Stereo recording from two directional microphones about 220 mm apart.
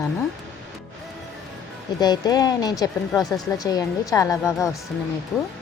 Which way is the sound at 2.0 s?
20° left (ahead or behind).